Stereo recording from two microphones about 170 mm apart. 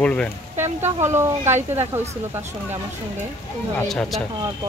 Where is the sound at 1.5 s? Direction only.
40° right (ahead or behind).